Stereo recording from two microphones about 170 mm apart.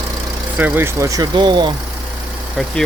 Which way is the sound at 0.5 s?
10° right (ahead or behind).